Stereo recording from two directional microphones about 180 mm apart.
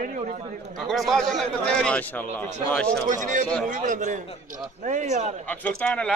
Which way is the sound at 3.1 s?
45° right (ahead or behind).